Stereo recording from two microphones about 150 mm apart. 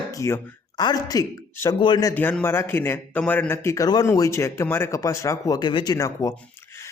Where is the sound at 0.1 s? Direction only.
20° left (ahead or behind).